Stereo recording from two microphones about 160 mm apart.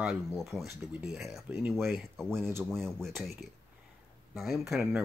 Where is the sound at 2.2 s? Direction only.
15° right (ahead or behind).